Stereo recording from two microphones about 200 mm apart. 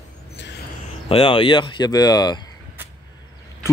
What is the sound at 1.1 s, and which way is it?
Speech, 25° left (ahead or behind).